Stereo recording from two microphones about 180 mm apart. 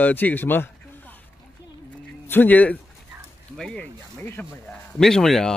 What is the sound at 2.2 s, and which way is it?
A man's voice, 10° left (ahead or behind).